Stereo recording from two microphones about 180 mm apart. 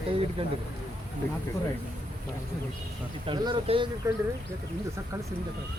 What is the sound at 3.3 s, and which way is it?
Speech, 25° right (ahead or behind).